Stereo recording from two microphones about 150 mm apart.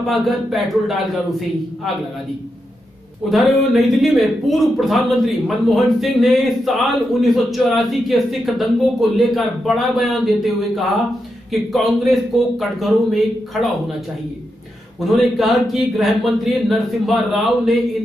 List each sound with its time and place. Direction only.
0.1 s speech: centre (ahead or behind)
3.3 s speech: centre (ahead or behind)
15.0 s speech: centre (ahead or behind)